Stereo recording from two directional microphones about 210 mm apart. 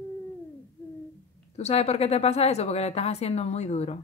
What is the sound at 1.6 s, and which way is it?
A woman's voice, 30° left (ahead or behind).